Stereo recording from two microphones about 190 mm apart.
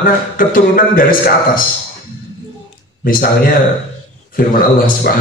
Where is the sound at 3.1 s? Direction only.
50° left (ahead or behind).